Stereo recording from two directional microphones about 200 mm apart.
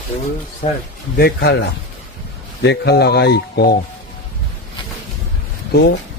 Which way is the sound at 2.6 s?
55° left (ahead or behind).